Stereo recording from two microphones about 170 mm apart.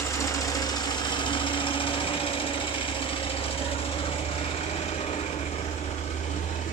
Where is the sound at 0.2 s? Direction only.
20° left (ahead or behind).